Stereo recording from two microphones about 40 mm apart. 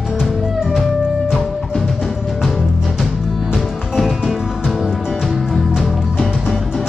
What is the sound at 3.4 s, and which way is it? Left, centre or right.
Music, centre.